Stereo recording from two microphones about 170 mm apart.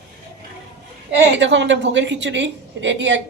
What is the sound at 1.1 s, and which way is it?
A woman's voice, 90° right.